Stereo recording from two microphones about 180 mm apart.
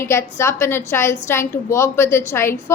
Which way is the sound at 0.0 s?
15° left (ahead or behind).